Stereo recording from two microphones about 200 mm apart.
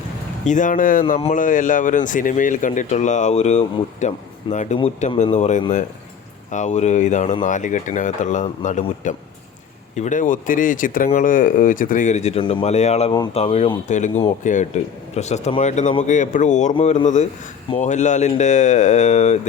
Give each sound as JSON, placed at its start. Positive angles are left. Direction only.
{"t": 0.4, "sound": "speech", "side_deg": 40}